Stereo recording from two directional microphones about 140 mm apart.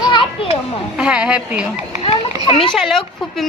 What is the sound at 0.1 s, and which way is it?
Children playing, 35° left (ahead or behind).